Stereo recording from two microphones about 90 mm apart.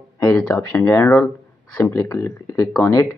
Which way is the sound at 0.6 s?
30° left (ahead or behind).